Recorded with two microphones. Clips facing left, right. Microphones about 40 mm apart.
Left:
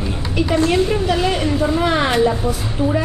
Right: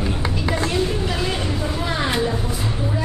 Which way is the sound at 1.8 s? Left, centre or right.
Left.